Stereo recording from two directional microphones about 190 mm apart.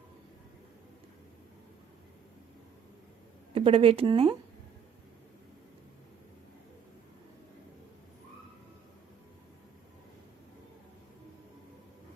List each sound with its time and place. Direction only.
3.5 s speech: 30° right (ahead or behind)